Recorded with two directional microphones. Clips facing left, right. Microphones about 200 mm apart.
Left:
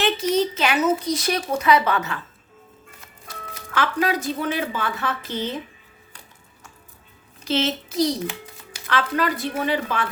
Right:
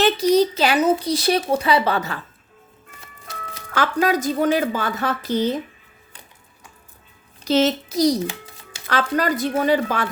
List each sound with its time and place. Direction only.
0.0 s speech: 35° right (ahead or behind)
3.8 s a woman's voice: 40° right (ahead or behind)
7.4 s a woman's voice: 40° right (ahead or behind)